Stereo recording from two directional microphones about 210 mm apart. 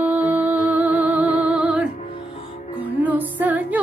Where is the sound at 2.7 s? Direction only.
10° right (ahead or behind).